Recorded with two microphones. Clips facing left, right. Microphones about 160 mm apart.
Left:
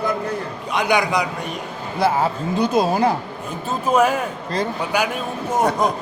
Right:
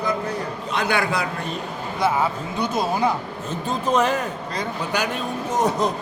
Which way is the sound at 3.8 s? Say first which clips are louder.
Left 3 dB; 10° left (ahead or behind).